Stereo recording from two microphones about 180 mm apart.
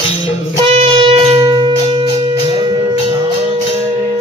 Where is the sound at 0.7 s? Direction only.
30° right (ahead or behind).